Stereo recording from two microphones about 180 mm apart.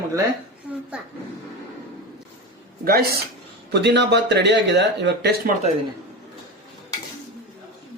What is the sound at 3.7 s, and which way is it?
Speech, 70° right (ahead or behind).